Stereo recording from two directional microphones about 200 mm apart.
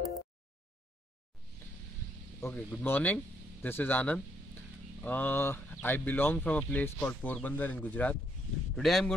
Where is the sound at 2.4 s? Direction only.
5° left (ahead or behind).